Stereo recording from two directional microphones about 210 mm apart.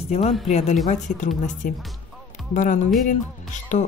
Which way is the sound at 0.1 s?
30° left (ahead or behind).